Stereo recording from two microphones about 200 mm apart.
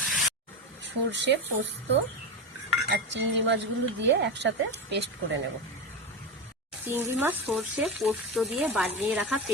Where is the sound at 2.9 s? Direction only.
65° right (ahead or behind).